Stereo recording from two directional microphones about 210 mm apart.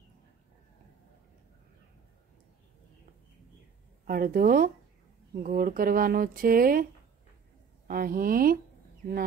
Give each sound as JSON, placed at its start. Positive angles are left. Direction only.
{"t": 4.1, "sound": "speech", "side_deg": -45}
{"t": 7.9, "sound": "speech", "side_deg": -45}